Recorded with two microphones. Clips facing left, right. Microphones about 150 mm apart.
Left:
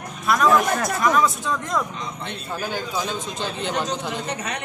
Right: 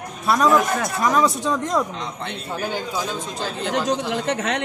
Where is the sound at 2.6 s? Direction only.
20° right (ahead or behind).